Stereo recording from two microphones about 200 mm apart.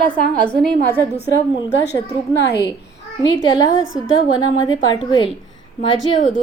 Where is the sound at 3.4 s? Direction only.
20° left (ahead or behind).